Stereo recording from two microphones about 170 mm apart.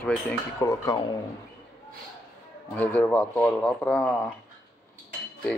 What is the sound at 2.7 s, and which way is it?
Speech, 10° left (ahead or behind).